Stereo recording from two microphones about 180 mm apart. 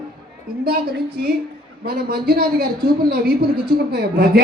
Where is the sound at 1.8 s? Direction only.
60° right (ahead or behind).